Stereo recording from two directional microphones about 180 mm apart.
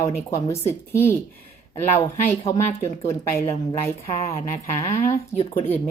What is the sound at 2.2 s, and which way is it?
Speech, 15° left (ahead or behind).